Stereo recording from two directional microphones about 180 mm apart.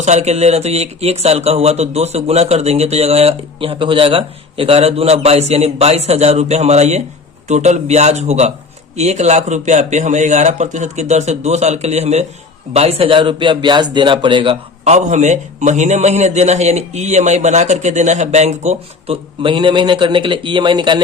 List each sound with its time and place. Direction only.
0.0 s a man's voice: 40° right (ahead or behind)